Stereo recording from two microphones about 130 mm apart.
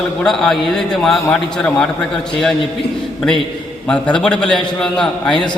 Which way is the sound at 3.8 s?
10° left (ahead or behind).